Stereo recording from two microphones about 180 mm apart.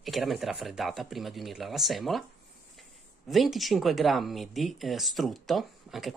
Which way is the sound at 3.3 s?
Centre (ahead or behind).